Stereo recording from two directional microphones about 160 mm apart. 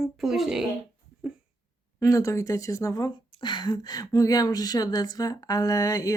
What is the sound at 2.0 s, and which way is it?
Speech, 20° left (ahead or behind).